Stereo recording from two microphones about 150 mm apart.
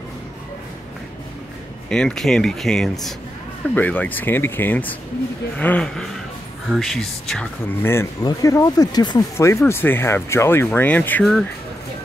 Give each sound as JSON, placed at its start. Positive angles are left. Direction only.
{"t": 1.9, "sound": "speech", "side_deg": 5}
{"t": 7.8, "sound": "speech", "side_deg": 15}
{"t": 9.7, "sound": "speech", "side_deg": 15}